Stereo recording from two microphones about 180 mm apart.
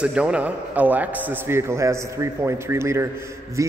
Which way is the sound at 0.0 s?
5° right (ahead or behind).